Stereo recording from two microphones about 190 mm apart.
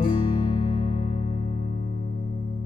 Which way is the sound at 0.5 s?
30° left (ahead or behind).